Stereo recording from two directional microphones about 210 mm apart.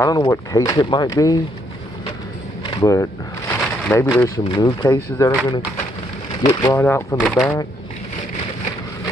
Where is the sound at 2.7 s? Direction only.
15° left (ahead or behind).